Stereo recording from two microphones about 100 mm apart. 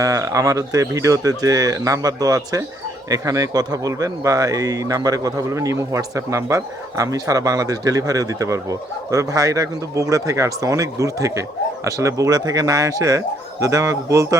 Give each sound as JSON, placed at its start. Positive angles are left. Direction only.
{"t": 0.0, "sound": "speech", "side_deg": -35}